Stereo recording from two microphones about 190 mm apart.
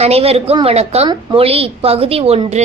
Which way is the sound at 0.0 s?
30° right (ahead or behind).